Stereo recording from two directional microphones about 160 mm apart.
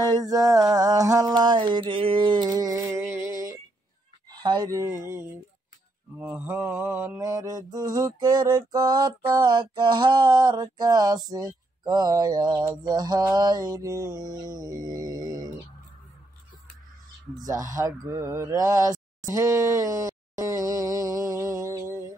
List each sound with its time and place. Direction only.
0.0 s a sound: 25° right (ahead or behind)
3.0 s music: 15° right (ahead or behind)
4.3 s a sound: 25° right (ahead or behind)
6.1 s mantra: 15° right (ahead or behind)
11.2 s speech: 25° right (ahead or behind)
12.8 s mantra: 25° right (ahead or behind)
17.4 s mantra: 20° right (ahead or behind)
17.7 s speech: 20° right (ahead or behind)